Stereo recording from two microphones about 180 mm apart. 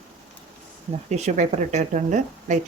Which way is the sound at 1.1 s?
40° right (ahead or behind).